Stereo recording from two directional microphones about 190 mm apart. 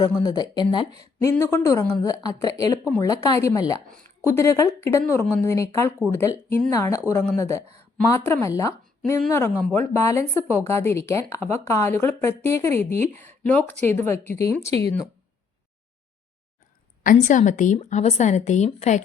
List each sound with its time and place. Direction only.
0.2 s speech: 20° left (ahead or behind)
14.7 s speech: 30° right (ahead or behind)
17.0 s a woman's voice: 40° left (ahead or behind)